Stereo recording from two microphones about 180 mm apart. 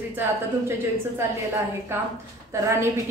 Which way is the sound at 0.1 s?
10° right (ahead or behind).